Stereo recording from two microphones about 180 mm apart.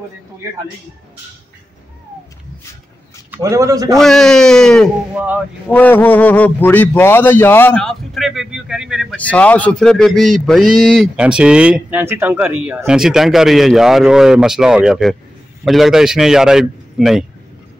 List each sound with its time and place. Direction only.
3.3 s a man's voice: 15° right (ahead or behind)
4.0 s speech: 5° left (ahead or behind)
5.1 s speech: 10° right (ahead or behind)
5.7 s a man's voice: 10° left (ahead or behind)
9.1 s speech: 10° left (ahead or behind)